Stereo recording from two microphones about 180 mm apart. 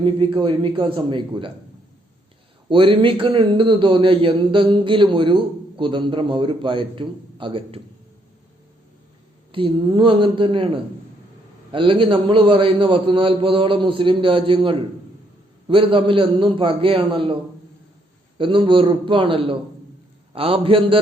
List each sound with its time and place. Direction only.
0.3 s a man's voice: 25° right (ahead or behind)
2.6 s a man's voice: 30° right (ahead or behind)
9.5 s a man's voice: 30° right (ahead or behind)
11.7 s a man's voice: 30° right (ahead or behind)
18.3 s a man's voice: 30° right (ahead or behind)